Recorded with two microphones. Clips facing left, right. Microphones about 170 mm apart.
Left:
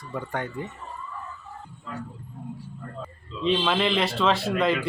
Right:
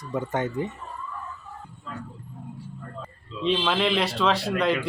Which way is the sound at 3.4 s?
Centre (ahead or behind).